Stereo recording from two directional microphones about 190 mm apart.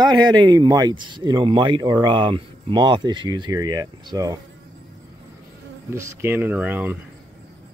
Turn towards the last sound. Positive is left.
turn(degrees=-10)  # may be behind; listen again after turning